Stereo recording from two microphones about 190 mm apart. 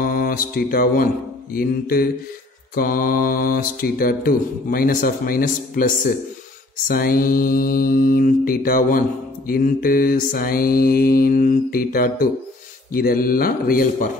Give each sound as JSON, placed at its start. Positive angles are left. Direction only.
{"t": 0.0, "sound": "mantra", "side_deg": 50}
{"t": 6.9, "sound": "mantra", "side_deg": 50}